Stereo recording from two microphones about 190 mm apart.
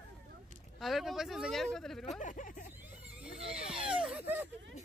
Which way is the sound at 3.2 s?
5° right (ahead or behind).